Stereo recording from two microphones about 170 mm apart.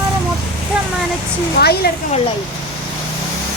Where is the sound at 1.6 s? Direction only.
70° left (ahead or behind).